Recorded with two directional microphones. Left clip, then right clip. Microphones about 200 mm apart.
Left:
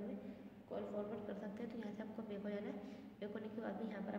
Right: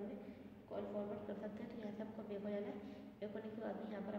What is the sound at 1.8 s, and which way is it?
A woman's voice, 40° left (ahead or behind).